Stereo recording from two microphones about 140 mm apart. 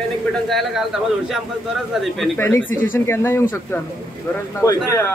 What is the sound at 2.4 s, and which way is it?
Speech, 20° left (ahead or behind).